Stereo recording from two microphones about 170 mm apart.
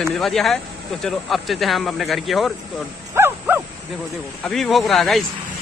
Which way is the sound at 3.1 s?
15° right (ahead or behind).